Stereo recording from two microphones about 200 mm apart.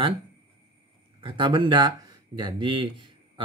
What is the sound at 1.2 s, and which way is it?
Speech, 25° right (ahead or behind).